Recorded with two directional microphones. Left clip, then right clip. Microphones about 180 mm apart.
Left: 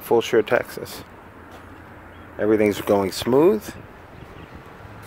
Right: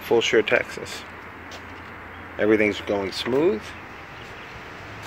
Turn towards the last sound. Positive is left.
turn(degrees=35)  # may be behind; listen again after turning